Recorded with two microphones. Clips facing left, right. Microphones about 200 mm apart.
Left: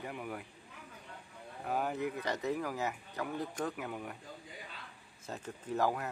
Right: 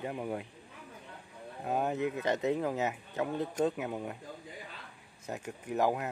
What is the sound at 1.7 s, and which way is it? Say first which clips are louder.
Speech: right 3 dB; 25° right (ahead or behind).